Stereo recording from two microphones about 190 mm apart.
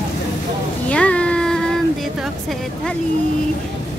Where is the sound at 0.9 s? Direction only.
5° left (ahead or behind).